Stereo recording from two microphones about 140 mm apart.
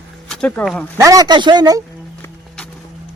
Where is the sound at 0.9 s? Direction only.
25° right (ahead or behind).